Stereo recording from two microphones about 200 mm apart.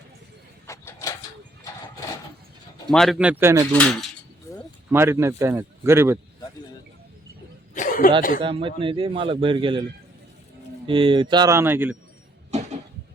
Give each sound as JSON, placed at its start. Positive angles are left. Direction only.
{"t": 0.7, "sound": "a sound", "side_deg": 15}
{"t": 2.9, "sound": "speech", "side_deg": 0}
{"t": 3.7, "sound": "speech", "side_deg": 5}
{"t": 4.5, "sound": "a sound", "side_deg": 15}
{"t": 4.9, "sound": "a man's voice", "side_deg": -10}
{"t": 7.7, "sound": "chuckle", "side_deg": 40}
{"t": 8.4, "sound": "a man's voice", "side_deg": -25}
{"t": 10.8, "sound": "a man's voice", "side_deg": -25}
{"t": 12.5, "sound": "a sound", "side_deg": -35}